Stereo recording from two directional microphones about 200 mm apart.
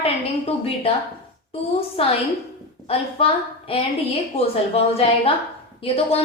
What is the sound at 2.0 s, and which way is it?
A woman's voice, 30° left (ahead or behind).